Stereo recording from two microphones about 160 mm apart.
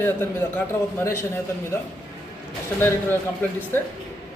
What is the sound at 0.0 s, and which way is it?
A man's voice, 15° left (ahead or behind).